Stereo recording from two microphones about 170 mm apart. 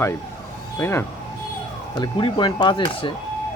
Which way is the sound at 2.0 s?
30° left (ahead or behind).